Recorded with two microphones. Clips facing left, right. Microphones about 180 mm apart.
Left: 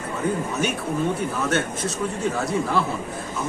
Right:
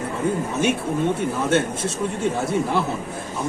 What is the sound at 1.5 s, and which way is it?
A man's voice, 25° right (ahead or behind).